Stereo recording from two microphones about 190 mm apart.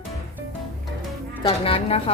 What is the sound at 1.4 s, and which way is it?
Speech, 30° left (ahead or behind).